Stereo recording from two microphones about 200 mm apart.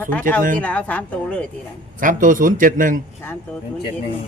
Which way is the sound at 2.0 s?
40° right (ahead or behind).